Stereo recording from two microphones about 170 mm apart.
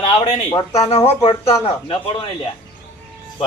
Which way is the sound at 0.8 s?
40° left (ahead or behind).